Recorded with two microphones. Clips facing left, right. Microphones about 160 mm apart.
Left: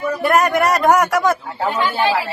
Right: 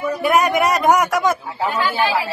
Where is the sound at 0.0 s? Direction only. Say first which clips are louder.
Left 1 dB; 5° right (ahead or behind).